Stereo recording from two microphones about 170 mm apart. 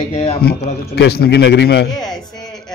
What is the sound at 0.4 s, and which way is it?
A man's voice, 70° left (ahead or behind).